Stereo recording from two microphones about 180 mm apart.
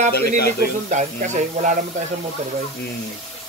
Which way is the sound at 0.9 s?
40° right (ahead or behind).